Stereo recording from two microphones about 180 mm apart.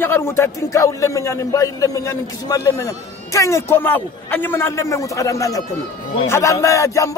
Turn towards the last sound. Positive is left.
turn(degrees=15)  # may be behind; listen again after turning